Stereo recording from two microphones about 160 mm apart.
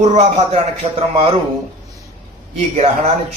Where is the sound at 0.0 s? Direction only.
45° right (ahead or behind).